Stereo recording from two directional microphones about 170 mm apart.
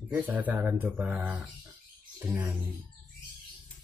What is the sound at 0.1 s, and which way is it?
Speech, 10° right (ahead or behind).